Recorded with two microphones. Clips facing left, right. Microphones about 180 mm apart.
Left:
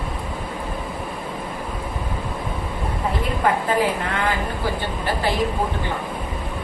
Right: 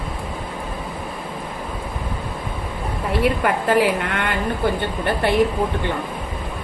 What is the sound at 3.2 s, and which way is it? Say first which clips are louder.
A woman's voice: right 3 dB; 75° right (ahead or behind).